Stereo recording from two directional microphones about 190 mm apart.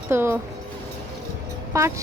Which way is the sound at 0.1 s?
10° right (ahead or behind).